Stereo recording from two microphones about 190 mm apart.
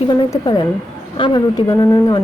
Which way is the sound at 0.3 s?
20° left (ahead or behind).